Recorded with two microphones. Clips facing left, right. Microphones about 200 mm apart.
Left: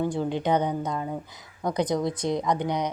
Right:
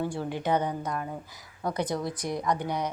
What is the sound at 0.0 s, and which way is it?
Speech, 20° left (ahead or behind).